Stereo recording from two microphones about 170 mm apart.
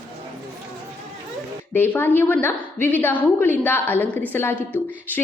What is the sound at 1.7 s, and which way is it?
A woman's voice, 10° left (ahead or behind).